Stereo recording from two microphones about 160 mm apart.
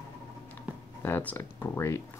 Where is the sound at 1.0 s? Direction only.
10° left (ahead or behind).